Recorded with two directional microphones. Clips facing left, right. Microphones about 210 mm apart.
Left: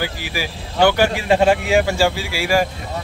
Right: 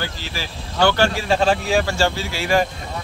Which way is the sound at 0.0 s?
10° left (ahead or behind).